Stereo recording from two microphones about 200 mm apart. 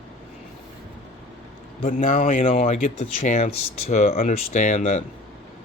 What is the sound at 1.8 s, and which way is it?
A man's voice, 45° left (ahead or behind).